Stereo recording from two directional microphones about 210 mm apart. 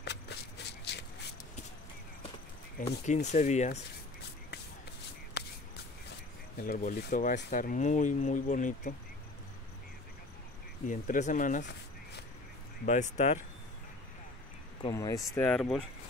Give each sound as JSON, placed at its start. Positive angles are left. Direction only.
{"t": 0.0, "sound": "a sound", "side_deg": 55}
{"t": 3.1, "sound": "speech", "side_deg": 35}
{"t": 5.4, "sound": "shuffle", "side_deg": 50}
{"t": 6.6, "sound": "speech", "side_deg": 40}
{"t": 10.9, "sound": "speech", "side_deg": 35}
{"t": 12.8, "sound": "speech", "side_deg": 35}
{"t": 14.8, "sound": "speech", "side_deg": 20}